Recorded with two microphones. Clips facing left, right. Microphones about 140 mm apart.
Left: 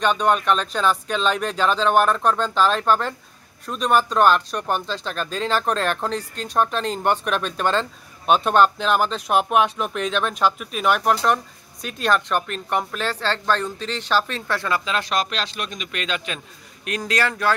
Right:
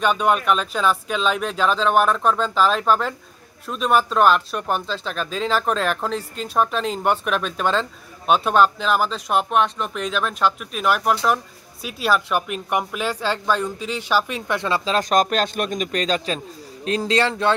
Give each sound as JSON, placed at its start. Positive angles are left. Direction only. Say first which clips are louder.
{"t": 0.0, "sound": "speech", "louder": "even", "side_deg": -5}
{"t": 14.9, "sound": "a man's voice", "louder": "right 5 dB", "side_deg": -45}